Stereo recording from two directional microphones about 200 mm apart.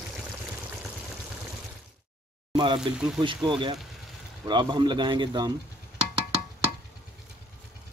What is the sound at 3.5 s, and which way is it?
A man's voice, 25° right (ahead or behind).